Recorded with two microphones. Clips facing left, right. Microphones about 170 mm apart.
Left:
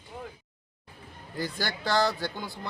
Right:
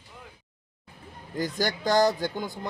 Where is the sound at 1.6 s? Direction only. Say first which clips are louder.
Right 4 dB; 15° right (ahead or behind).